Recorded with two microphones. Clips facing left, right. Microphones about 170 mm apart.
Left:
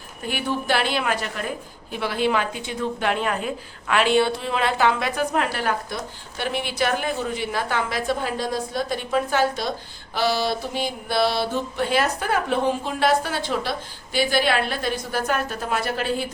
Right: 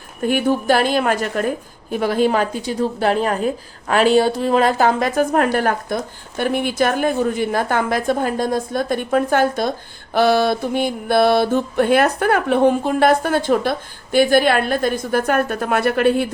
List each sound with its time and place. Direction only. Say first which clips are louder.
0.3 s a woman's voice: right 8 dB; 45° right (ahead or behind)